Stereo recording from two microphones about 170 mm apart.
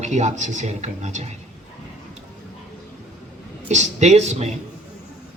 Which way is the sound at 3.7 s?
40° right (ahead or behind).